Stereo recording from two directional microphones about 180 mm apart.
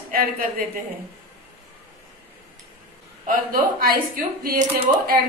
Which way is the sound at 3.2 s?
55° right (ahead or behind).